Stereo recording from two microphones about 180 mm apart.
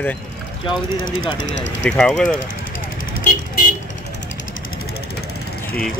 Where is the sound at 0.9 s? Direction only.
90° left.